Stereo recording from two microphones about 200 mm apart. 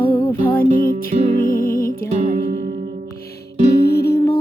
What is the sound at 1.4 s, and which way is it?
Music, 45° left (ahead or behind).